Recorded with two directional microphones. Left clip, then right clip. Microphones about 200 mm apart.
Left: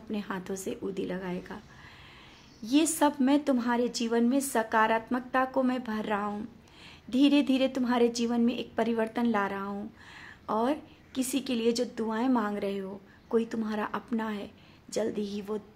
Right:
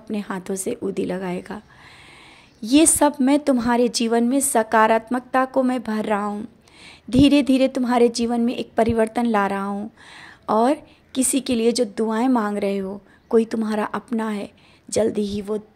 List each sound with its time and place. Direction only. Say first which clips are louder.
0.1 s a woman's voice: right 8 dB; 35° right (ahead or behind)
2.6 s a woman's voice: right 9 dB; 35° right (ahead or behind)